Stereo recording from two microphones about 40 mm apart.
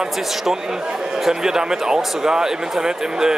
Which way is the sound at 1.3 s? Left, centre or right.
Centre.